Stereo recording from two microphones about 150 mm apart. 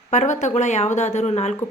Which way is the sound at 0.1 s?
50° left (ahead or behind).